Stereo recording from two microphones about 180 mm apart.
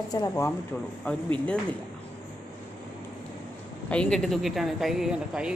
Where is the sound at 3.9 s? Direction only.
5° left (ahead or behind).